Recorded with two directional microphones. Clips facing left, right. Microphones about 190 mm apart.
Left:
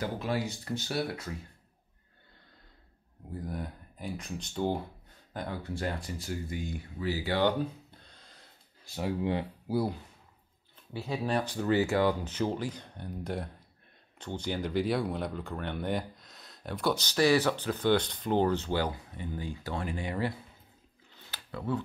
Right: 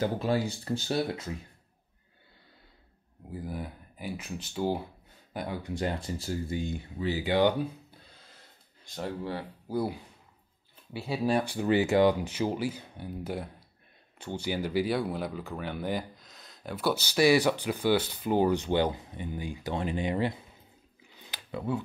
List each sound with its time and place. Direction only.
0.0 s speech: 30° right (ahead or behind)
3.3 s speech: 5° right (ahead or behind)
8.8 s speech: 5° left (ahead or behind)
9.2 s speech: 20° left (ahead or behind)
10.9 s speech: 10° right (ahead or behind)
21.1 s a sound: 15° right (ahead or behind)